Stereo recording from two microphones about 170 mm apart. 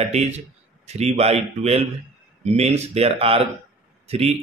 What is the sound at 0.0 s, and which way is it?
Speech, 40° right (ahead or behind).